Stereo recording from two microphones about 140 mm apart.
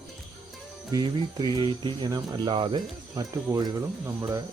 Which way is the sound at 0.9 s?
30° right (ahead or behind).